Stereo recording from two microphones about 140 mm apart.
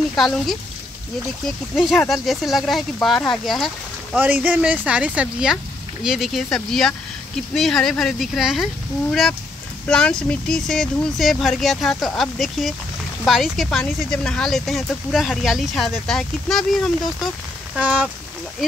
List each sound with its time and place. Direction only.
0.1 s speech: centre (ahead or behind)
1.8 s speech: centre (ahead or behind)
4.2 s speech: 10° right (ahead or behind)
9.8 s speech: 5° left (ahead or behind)
17.7 s speech: 10° right (ahead or behind)